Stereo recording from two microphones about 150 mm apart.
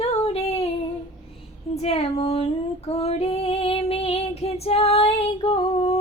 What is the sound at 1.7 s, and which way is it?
Female singing, 40° left (ahead or behind).